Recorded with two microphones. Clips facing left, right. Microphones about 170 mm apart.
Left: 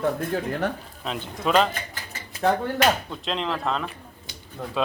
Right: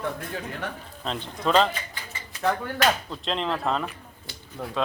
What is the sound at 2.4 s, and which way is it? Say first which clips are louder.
Speech: left 4 dB; 30° left (ahead or behind).